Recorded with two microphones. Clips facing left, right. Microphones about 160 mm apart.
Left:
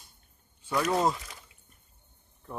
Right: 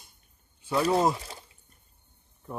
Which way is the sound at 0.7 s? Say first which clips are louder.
Right 3 dB; 30° right (ahead or behind).